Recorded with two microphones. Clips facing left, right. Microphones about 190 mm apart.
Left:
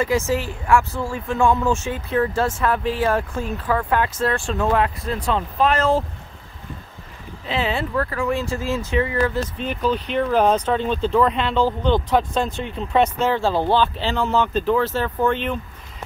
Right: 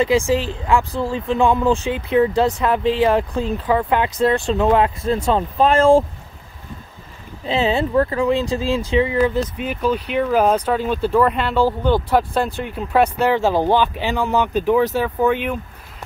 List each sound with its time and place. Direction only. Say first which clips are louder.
0.0 s speech: right 4 dB; 15° right (ahead or behind)
7.4 s speech: right 5 dB; 25° right (ahead or behind); by 15.6 s 10° right (ahead or behind)